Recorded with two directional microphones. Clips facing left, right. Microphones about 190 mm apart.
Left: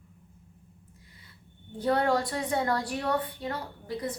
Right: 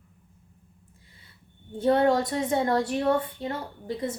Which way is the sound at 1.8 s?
25° right (ahead or behind).